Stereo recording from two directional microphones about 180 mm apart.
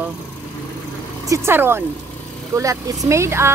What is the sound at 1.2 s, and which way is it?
Speech, 15° right (ahead or behind).